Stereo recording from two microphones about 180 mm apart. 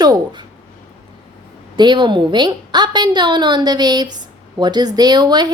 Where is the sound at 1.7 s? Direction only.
25° right (ahead or behind).